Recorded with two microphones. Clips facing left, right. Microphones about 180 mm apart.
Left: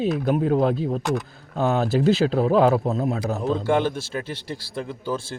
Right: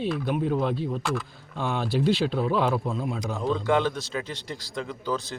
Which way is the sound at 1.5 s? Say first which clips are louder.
Left 6 dB; 45° left (ahead or behind).